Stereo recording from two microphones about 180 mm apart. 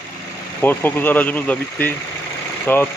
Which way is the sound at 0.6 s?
10° left (ahead or behind).